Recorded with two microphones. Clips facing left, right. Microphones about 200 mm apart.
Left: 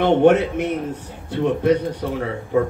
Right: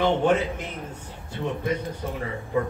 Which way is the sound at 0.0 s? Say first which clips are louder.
Left 7 dB; 65° left (ahead or behind).